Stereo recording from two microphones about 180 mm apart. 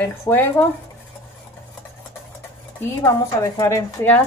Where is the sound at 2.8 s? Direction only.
15° left (ahead or behind).